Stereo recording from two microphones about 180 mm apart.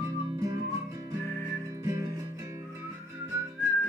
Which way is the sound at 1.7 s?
15° right (ahead or behind).